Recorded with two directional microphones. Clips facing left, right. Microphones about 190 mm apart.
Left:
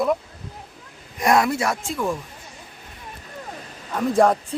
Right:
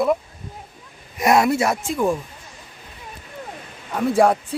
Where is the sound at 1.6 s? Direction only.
20° right (ahead or behind).